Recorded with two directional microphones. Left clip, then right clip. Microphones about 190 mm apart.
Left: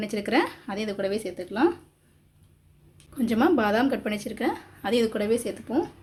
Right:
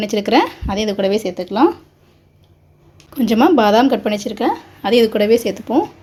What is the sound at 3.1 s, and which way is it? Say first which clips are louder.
Speech: right 10 dB; 20° right (ahead or behind).